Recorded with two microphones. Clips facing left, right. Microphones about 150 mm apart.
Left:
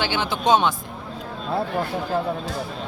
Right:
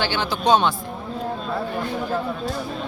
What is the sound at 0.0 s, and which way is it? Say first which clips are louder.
Speech: right 1 dB; 15° left (ahead or behind).